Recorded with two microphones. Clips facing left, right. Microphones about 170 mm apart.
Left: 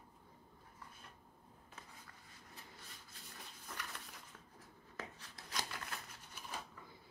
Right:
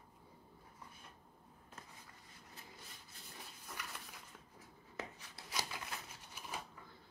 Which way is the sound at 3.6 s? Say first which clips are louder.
Left 1 dB; 5° right (ahead or behind).